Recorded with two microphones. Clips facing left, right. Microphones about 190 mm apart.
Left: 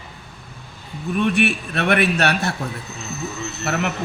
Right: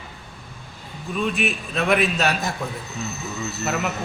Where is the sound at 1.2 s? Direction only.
70° left (ahead or behind).